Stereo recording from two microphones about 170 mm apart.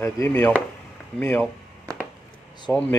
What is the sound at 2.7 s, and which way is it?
Chop, 15° left (ahead or behind).